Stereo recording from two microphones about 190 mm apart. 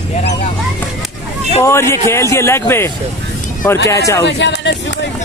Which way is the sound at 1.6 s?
15° left (ahead or behind).